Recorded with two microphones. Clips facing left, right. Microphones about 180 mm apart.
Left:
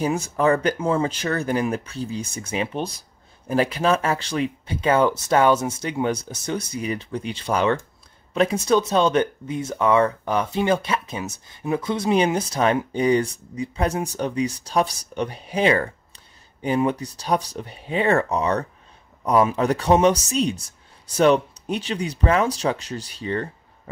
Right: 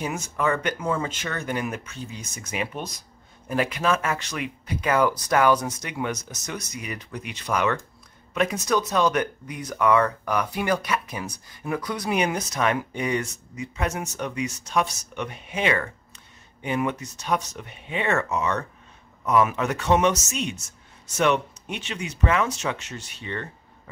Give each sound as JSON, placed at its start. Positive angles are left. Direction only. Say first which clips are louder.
{"t": 0.0, "sound": "speech", "louder": "left 6 dB", "side_deg": 35}